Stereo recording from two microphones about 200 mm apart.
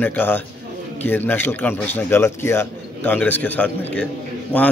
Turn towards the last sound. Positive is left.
turn(degrees=5)  # may be behind; listen again after turning